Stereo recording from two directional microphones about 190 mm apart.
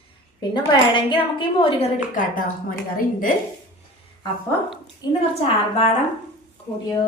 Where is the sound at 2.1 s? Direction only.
45° left (ahead or behind).